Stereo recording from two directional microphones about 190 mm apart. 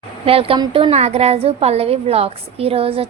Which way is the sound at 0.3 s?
30° right (ahead or behind).